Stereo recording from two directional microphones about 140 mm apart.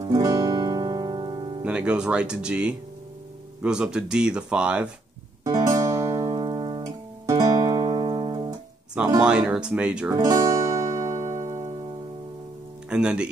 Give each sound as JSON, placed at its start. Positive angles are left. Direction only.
{"t": 0.1, "sound": "guitar", "side_deg": -25}
{"t": 1.6, "sound": "speech", "side_deg": -10}
{"t": 5.4, "sound": "music", "side_deg": -25}
{"t": 9.2, "sound": "speech", "side_deg": -5}
{"t": 10.1, "sound": "music", "side_deg": -25}
{"t": 12.9, "sound": "speech", "side_deg": -5}